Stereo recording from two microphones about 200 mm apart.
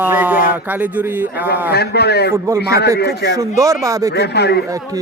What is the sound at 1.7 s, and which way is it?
Speech, 55° left (ahead or behind).